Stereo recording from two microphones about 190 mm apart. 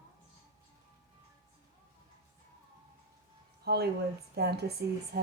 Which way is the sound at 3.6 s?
60° right (ahead or behind).